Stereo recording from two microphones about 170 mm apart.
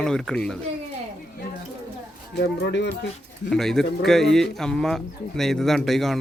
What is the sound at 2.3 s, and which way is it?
Speech, 85° left.